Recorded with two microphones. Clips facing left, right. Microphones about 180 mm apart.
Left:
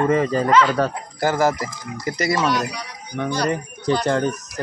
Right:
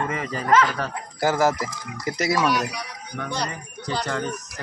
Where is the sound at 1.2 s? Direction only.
5° right (ahead or behind).